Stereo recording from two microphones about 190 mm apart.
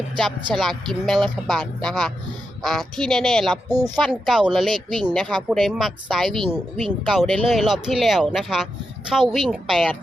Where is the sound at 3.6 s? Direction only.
20° right (ahead or behind).